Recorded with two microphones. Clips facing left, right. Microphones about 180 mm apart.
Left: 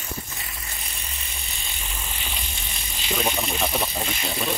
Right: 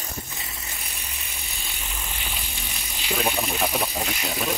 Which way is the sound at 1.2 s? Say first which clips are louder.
Even; 10° right (ahead or behind).